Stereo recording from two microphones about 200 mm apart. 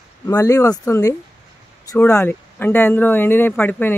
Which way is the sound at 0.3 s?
15° left (ahead or behind).